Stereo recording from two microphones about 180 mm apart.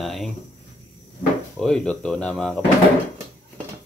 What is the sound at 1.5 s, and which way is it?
Speech, 5° left (ahead or behind).